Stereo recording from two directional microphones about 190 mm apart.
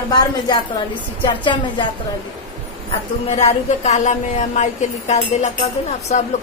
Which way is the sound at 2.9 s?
30° left (ahead or behind).